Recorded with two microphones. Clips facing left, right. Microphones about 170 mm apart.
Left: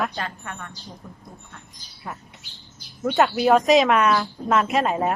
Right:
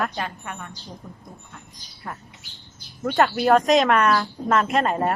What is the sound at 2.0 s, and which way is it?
Speech, 5° left (ahead or behind).